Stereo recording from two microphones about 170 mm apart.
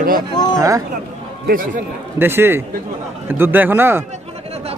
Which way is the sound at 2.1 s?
15° right (ahead or behind).